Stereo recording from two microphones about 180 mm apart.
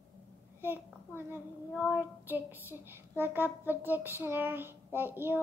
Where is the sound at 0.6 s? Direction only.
10° right (ahead or behind).